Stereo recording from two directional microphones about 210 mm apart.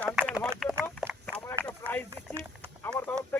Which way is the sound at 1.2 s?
5° left (ahead or behind).